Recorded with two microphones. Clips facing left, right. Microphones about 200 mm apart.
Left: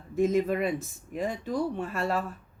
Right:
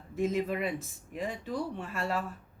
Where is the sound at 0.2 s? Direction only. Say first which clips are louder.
Left 5 dB; 45° left (ahead or behind).